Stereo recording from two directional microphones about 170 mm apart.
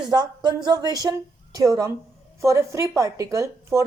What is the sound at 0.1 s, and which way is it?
A woman's voice, 25° right (ahead or behind).